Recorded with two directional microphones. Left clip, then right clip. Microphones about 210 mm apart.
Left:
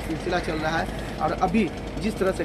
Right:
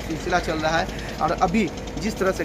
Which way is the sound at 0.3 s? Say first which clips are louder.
Right 4 dB; 20° right (ahead or behind).